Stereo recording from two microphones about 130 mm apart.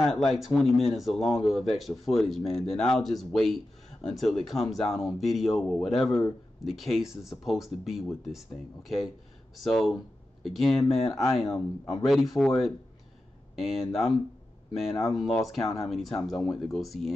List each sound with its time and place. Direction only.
0.0 s speech: centre (ahead or behind)